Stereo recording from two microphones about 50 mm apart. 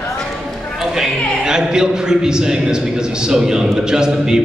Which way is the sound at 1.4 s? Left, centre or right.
Centre.